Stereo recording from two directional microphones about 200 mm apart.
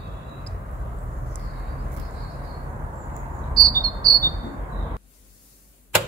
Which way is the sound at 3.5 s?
20° right (ahead or behind).